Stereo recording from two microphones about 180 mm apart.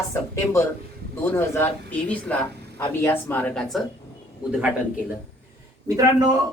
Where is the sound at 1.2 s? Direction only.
15° left (ahead or behind).